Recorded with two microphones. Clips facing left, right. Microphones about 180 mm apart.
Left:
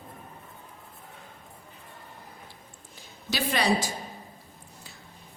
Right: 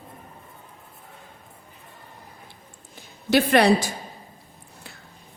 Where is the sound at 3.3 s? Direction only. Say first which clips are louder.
Right 9 dB; 60° right (ahead or behind).